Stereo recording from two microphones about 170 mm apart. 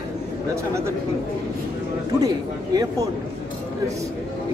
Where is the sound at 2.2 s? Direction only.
20° right (ahead or behind).